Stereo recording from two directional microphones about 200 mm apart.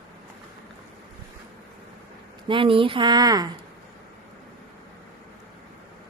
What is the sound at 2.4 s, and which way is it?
A woman's voice, 25° right (ahead or behind).